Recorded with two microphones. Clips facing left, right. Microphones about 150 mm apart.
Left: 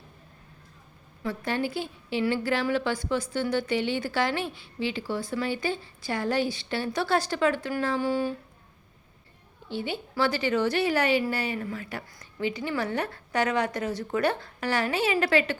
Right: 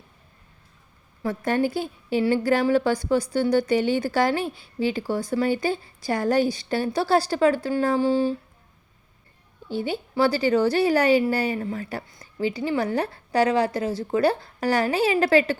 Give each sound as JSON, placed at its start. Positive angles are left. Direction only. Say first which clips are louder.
{"t": 1.3, "sound": "a woman's voice", "louder": "right 6 dB", "side_deg": -45}
{"t": 9.6, "sound": "speech", "louder": "right 5 dB", "side_deg": -40}